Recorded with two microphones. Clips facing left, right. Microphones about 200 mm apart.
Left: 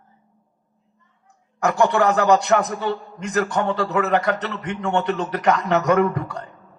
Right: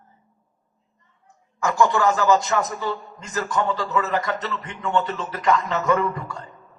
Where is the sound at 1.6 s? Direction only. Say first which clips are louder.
Left 2 dB; 65° left (ahead or behind).